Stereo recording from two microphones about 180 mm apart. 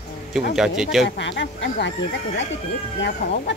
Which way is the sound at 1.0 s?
75° left (ahead or behind).